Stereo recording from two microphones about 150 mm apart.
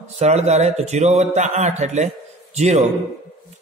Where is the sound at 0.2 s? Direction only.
50° right (ahead or behind).